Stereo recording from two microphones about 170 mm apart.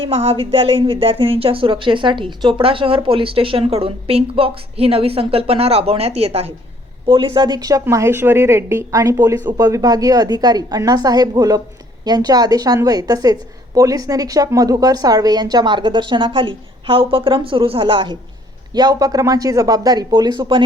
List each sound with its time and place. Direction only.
0.0 s a woman's voice: 35° right (ahead or behind)